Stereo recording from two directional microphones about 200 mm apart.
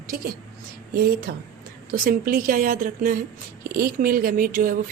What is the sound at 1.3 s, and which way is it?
Speech, 50° right (ahead or behind).